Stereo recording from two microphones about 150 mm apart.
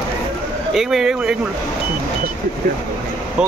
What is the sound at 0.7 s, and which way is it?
Speech, centre (ahead or behind).